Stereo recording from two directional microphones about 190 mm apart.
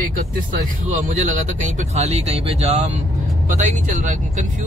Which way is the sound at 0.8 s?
40° right (ahead or behind).